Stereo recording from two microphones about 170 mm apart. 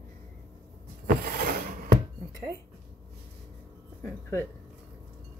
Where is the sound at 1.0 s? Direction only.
60° right (ahead or behind).